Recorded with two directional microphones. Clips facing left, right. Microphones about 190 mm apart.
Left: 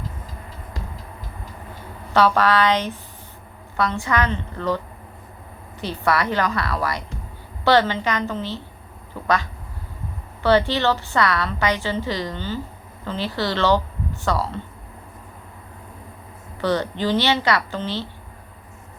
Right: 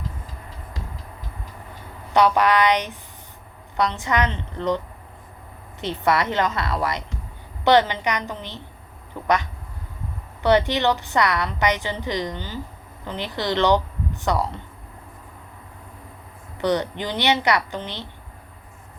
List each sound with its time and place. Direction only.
2.1 s a woman's voice: 15° right (ahead or behind)
5.8 s a woman's voice: 20° right (ahead or behind)
16.6 s speech: 20° right (ahead or behind)